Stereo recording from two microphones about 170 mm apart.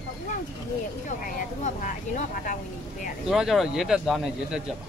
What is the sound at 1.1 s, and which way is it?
Speech, 50° left (ahead or behind).